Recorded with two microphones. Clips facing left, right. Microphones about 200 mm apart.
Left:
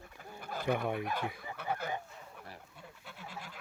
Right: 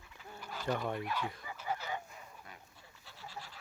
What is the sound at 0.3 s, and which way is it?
Bird, 55° left (ahead or behind).